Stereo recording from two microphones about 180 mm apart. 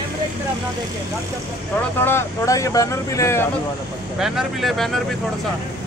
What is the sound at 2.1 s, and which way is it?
Speech, 15° left (ahead or behind).